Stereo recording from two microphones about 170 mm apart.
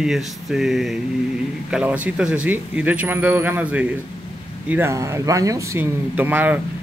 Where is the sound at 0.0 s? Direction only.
Centre (ahead or behind).